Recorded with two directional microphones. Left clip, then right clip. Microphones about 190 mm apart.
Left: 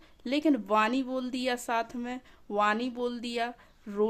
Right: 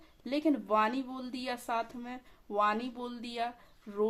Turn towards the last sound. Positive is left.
turn(degrees=40)  # may be behind; listen again after turning